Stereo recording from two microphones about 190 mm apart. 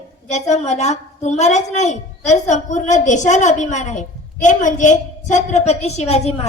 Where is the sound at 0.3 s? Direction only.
35° left (ahead or behind).